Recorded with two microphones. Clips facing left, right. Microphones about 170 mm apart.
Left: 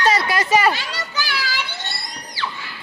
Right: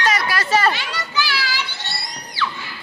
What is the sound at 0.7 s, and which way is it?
Children playing, 40° left (ahead or behind).